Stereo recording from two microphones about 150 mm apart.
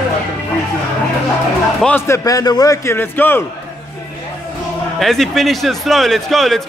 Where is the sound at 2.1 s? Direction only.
20° left (ahead or behind).